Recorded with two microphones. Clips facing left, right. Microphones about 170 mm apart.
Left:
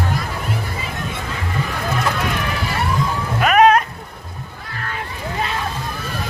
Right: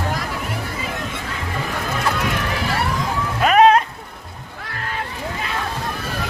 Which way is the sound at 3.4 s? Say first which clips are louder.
Even; 30° right (ahead or behind).